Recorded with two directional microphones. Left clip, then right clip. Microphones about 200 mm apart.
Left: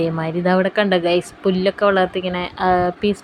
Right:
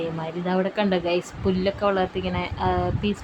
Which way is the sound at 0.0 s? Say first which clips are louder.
Left 8 dB; 25° left (ahead or behind).